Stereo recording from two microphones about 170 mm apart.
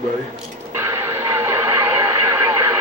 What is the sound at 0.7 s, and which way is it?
Radio, 15° right (ahead or behind).